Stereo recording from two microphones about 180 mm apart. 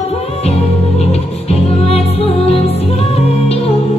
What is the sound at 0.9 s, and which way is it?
Music, 35° left (ahead or behind).